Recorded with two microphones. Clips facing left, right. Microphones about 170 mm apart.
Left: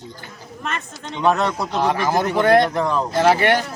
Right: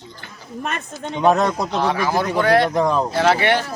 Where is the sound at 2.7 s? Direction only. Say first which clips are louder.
Right 3 dB; 35° right (ahead or behind).